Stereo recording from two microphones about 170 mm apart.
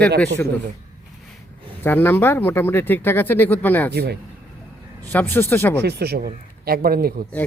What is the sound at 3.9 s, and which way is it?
Speech, 75° right (ahead or behind).